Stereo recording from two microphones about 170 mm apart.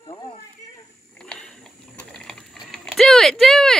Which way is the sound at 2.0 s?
5° left (ahead or behind).